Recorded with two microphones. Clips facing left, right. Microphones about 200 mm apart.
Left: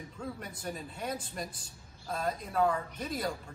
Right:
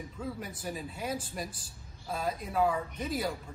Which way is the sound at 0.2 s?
5° right (ahead or behind).